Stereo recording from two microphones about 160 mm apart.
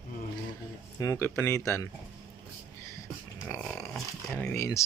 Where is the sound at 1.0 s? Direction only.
20° left (ahead or behind).